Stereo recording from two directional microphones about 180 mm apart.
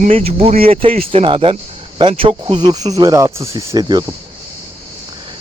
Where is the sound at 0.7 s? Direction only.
35° right (ahead or behind).